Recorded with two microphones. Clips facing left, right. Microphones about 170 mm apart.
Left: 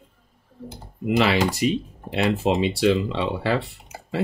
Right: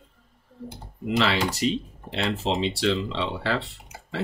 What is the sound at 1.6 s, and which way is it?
Speech, 10° left (ahead or behind).